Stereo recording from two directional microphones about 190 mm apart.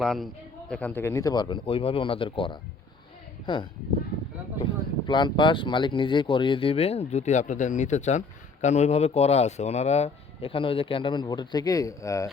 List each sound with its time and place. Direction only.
0.0 s a man's voice: centre (ahead or behind)